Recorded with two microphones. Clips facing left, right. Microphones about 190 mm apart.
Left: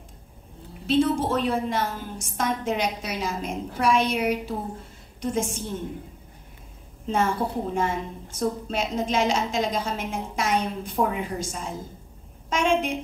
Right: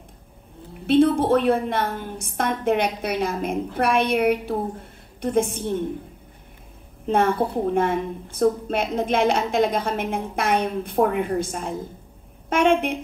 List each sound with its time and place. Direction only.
0.8 s a woman's voice: 55° right (ahead or behind)
7.1 s a woman's voice: 60° right (ahead or behind)